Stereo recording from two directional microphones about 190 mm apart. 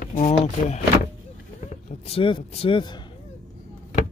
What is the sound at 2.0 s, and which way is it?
Speech, 30° left (ahead or behind).